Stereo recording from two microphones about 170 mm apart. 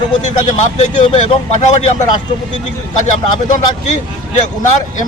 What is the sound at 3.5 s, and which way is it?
A man's voice, 45° left (ahead or behind).